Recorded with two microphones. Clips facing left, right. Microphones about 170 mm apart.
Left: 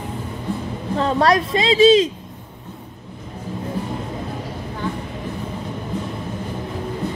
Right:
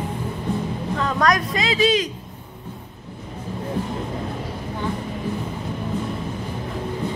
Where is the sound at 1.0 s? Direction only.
30° left (ahead or behind).